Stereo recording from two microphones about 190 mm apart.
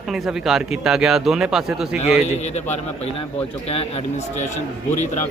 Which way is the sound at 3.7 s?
30° left (ahead or behind).